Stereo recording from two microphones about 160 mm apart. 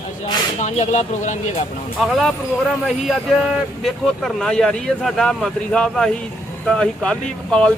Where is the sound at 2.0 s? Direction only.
Centre (ahead or behind).